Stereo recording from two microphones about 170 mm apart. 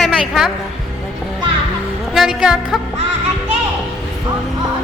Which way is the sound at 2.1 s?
5° right (ahead or behind).